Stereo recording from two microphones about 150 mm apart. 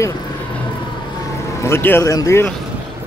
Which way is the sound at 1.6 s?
15° left (ahead or behind).